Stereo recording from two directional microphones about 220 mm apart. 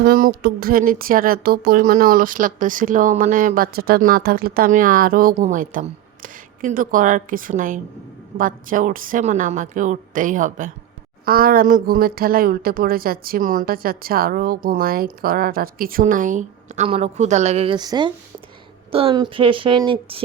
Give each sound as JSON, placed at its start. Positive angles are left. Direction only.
{"t": 0.0, "sound": "a woman's voice", "side_deg": -40}